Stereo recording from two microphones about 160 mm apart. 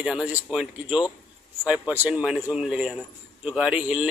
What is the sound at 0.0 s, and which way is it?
Speech, 5° right (ahead or behind).